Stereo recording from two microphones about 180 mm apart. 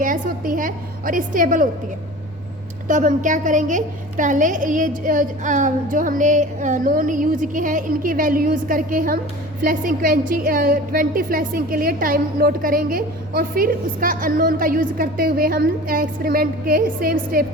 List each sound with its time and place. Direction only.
0.0 s a woman's voice: 50° right (ahead or behind)
2.8 s a woman's voice: 45° right (ahead or behind)